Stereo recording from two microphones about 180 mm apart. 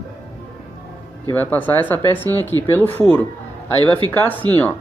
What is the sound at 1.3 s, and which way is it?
Speech, 10° left (ahead or behind).